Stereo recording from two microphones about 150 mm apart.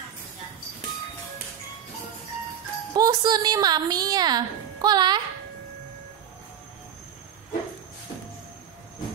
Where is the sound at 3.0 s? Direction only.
25° right (ahead or behind).